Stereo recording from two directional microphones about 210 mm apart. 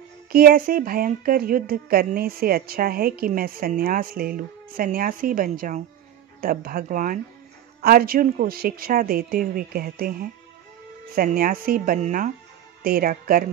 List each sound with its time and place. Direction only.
0.3 s speech: 45° right (ahead or behind)